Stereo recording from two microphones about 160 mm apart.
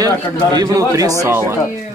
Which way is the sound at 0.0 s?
25° right (ahead or behind).